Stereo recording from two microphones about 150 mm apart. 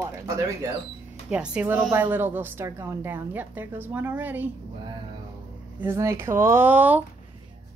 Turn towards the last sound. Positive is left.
turn(degrees=-10)  # may be behind; listen again after turning